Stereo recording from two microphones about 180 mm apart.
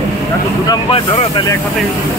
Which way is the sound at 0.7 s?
30° left (ahead or behind).